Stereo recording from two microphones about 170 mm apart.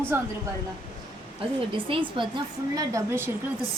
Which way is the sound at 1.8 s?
30° right (ahead or behind).